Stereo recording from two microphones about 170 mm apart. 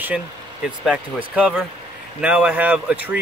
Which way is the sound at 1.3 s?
5° right (ahead or behind).